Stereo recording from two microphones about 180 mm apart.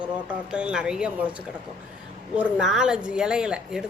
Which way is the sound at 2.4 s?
5° right (ahead or behind).